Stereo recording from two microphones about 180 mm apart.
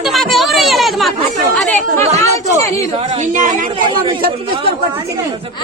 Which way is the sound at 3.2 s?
45° right (ahead or behind).